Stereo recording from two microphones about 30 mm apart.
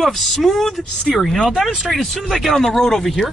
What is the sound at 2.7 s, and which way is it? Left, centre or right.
Speech, centre.